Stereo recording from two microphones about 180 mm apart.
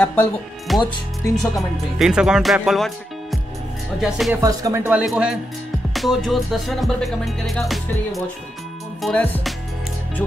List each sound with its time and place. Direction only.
0.0 s speech: 10° left (ahead or behind)
2.0 s speech: 5° right (ahead or behind)
4.0 s music: 5° right (ahead or behind)
4.4 s speech: 20° right (ahead or behind)
5.0 s music: 5° right (ahead or behind)
9.0 s speech: 10° left (ahead or behind)